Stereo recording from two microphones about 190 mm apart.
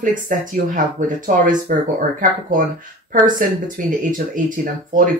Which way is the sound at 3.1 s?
45° right (ahead or behind).